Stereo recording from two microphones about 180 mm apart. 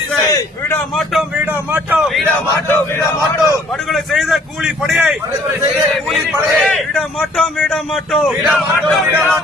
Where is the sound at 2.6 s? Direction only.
10° left (ahead or behind).